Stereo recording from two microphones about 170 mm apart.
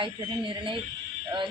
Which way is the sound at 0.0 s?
30° right (ahead or behind).